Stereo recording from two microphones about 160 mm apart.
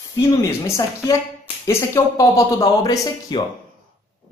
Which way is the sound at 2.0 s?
20° left (ahead or behind).